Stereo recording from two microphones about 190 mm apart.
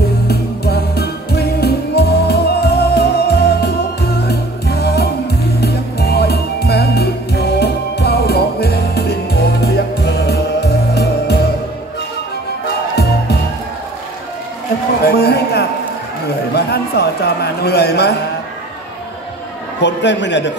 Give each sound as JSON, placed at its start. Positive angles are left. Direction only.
{"t": 0.3, "sound": "music", "side_deg": 55}
{"t": 12.6, "sound": "music", "side_deg": 60}
{"t": 15.0, "sound": "a sound", "side_deg": 55}
{"t": 19.8, "sound": "a man's voice", "side_deg": 65}